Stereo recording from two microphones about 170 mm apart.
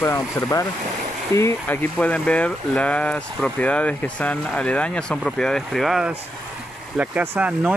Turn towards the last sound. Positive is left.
turn(degrees=-5)  # may be behind; listen again after turning